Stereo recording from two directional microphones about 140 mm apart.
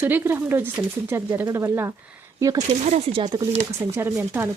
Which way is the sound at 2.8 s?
55° right (ahead or behind).